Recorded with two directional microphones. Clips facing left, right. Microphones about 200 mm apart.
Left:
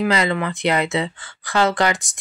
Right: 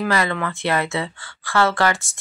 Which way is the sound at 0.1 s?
20° left (ahead or behind).